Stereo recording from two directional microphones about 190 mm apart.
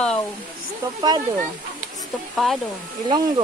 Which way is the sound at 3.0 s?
25° right (ahead or behind).